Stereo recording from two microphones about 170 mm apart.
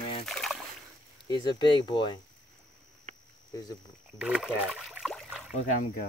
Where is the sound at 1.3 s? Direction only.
25° left (ahead or behind).